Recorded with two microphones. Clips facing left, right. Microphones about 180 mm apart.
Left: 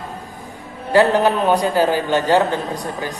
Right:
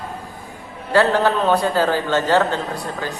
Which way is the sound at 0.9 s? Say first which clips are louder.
Left 2 dB; 15° left (ahead or behind).